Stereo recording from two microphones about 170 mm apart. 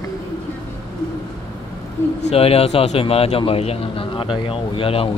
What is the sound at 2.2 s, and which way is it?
A man's voice, 35° left (ahead or behind).